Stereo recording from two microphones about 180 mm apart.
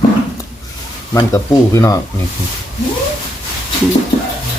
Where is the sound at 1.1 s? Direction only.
15° left (ahead or behind).